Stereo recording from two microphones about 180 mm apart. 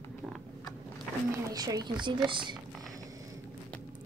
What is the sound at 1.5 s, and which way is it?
Speech, 20° right (ahead or behind).